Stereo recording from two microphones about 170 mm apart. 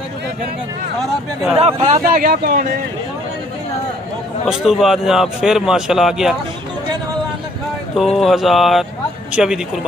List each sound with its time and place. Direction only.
1.6 s speech: 40° right (ahead or behind)
2.1 s speech: 55° right (ahead or behind)
4.5 s speech: 5° right (ahead or behind)
8.0 s speech: centre (ahead or behind)